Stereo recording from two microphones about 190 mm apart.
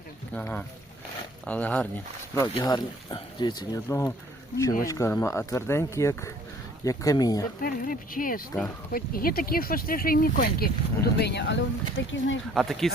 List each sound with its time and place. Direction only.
0.3 s speech: 10° left (ahead or behind)
2.3 s speech: 20° left (ahead or behind)
7.6 s speech: 45° left (ahead or behind); by 12.4 s 80° left
12.5 s speech: centre (ahead or behind)